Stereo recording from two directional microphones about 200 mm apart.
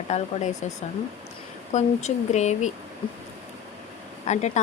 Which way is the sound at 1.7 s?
35° left (ahead or behind).